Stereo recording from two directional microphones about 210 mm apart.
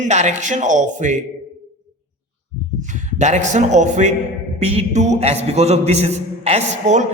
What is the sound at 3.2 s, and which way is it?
A man's voice, 35° right (ahead or behind).